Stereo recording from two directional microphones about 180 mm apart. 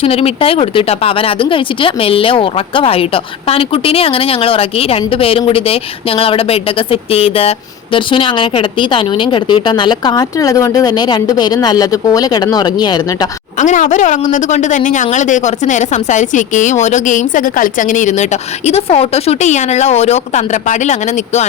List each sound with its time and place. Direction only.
0.0 s a woman's voice: 35° left (ahead or behind)
13.6 s a woman's voice: 40° left (ahead or behind)